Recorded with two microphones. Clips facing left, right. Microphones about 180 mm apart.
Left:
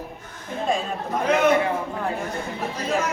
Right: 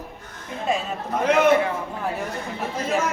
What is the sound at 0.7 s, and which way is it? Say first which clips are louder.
Speech: even; 5° right (ahead or behind).